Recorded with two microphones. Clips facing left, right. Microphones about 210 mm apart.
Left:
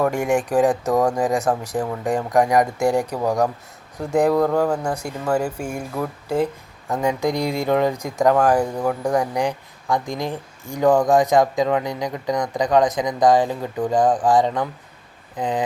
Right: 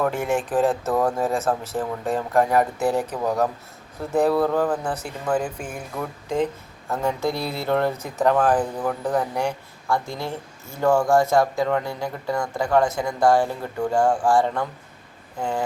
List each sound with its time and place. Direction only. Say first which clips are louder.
0.0 s speech: left 3 dB; 15° left (ahead or behind)